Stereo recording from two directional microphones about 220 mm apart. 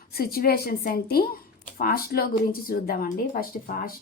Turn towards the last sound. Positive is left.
turn(degrees=40)  # may be behind; listen again after turning